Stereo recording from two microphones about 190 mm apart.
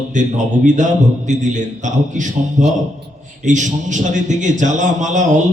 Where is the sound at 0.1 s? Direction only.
40° right (ahead or behind).